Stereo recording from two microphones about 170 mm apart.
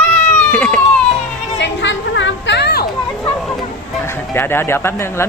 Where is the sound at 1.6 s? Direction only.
90° left; by 2.8 s 75° left (ahead or behind).